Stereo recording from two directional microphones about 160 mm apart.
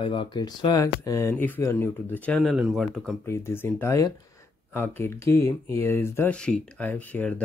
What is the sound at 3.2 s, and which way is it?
Speech, 15° left (ahead or behind).